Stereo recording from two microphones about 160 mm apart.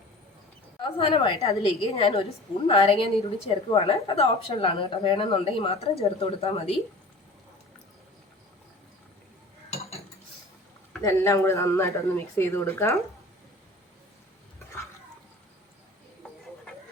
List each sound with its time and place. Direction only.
0.8 s a woman's voice: 35° left (ahead or behind)
11.0 s speech: 15° left (ahead or behind)